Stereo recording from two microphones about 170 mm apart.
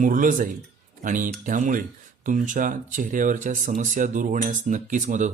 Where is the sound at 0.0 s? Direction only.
50° right (ahead or behind).